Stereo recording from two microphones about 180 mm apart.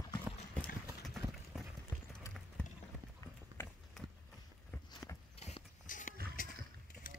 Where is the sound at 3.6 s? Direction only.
10° left (ahead or behind).